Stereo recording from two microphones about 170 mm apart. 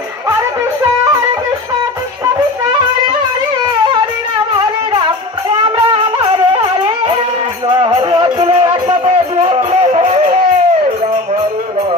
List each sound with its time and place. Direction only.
5.8 s wind instrument: 30° right (ahead or behind)
7.6 s music: 30° right (ahead or behind)